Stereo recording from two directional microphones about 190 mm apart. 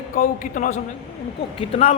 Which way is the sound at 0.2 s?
45° left (ahead or behind).